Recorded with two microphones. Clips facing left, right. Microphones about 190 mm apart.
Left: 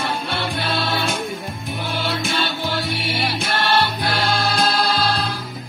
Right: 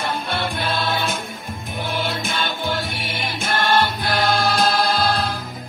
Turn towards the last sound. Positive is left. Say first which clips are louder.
# right 1 dB
turn(degrees=-55)  # may be behind; listen again after turning